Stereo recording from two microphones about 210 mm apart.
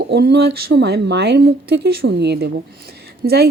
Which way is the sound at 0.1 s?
50° right (ahead or behind).